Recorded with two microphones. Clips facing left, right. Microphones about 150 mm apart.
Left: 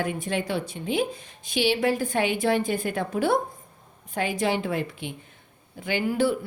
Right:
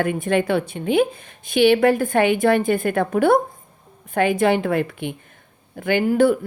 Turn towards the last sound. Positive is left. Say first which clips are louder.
# right 7 dB
turn(degrees=-50)  # may be behind; listen again after turning